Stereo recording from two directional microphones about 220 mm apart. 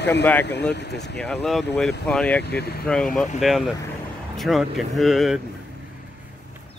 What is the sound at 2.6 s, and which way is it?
Speech, 45° left (ahead or behind).